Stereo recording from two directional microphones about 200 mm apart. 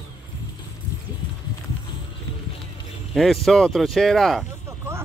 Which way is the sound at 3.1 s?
Centre (ahead or behind).